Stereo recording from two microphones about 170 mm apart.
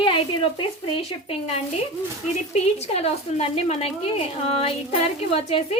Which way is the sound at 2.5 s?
35° left (ahead or behind).